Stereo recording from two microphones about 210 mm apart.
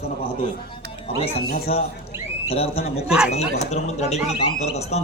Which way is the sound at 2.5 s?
30° left (ahead or behind).